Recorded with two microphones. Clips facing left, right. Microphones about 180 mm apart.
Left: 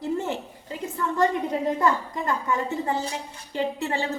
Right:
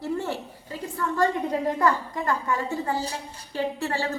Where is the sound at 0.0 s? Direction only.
20° left (ahead or behind).